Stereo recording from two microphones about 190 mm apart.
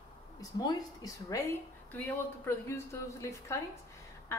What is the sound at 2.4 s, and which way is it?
A woman's voice, 15° left (ahead or behind).